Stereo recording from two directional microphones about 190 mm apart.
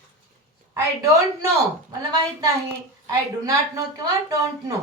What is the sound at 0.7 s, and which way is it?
A woman's voice, 15° right (ahead or behind).